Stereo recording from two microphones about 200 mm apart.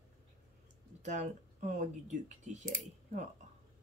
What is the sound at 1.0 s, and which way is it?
Speech, 35° right (ahead or behind).